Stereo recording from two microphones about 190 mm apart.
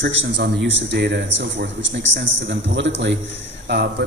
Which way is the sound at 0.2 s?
70° right (ahead or behind).